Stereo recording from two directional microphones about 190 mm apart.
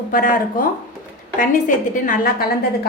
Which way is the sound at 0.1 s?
45° left (ahead or behind).